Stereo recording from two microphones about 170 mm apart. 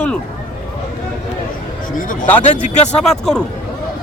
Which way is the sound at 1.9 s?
50° left (ahead or behind).